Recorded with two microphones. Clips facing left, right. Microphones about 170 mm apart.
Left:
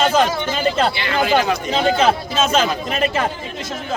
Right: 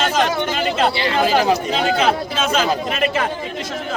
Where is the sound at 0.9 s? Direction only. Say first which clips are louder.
Right 2 dB; 30° right (ahead or behind).